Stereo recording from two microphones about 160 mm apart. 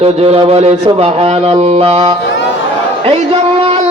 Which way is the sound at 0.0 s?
40° right (ahead or behind).